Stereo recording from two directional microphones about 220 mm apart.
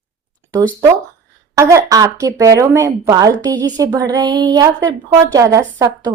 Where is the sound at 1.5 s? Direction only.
15° right (ahead or behind).